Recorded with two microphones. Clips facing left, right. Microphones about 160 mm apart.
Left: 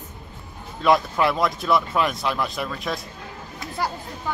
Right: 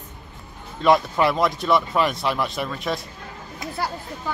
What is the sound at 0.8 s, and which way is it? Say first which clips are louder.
Speech: right 1 dB; centre (ahead or behind).